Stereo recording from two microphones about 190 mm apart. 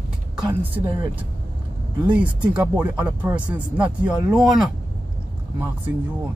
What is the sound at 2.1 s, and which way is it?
Speech, 5° right (ahead or behind).